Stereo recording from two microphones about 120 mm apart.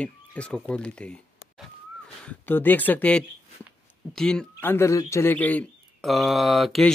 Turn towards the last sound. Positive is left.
turn(degrees=0)  # may be behind; listen again after turning